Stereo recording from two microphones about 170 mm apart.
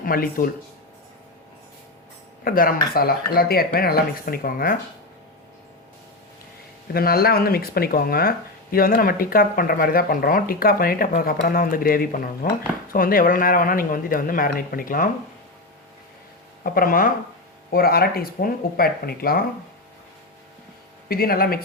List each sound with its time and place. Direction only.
0.0 s speech: 55° left (ahead or behind)
2.4 s speech: 55° left (ahead or behind)
6.9 s speech: 60° left (ahead or behind)
16.6 s speech: 55° left (ahead or behind)
21.1 s speech: 60° left (ahead or behind)